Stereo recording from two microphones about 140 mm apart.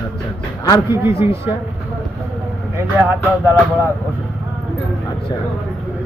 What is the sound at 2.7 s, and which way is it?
Speech, 15° right (ahead or behind).